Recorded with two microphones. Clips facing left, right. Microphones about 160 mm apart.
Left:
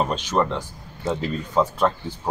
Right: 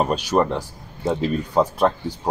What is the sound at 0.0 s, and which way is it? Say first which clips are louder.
Speech: right 3 dB; 10° right (ahead or behind).